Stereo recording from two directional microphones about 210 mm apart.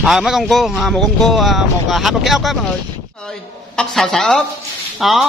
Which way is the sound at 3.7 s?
Centre (ahead or behind).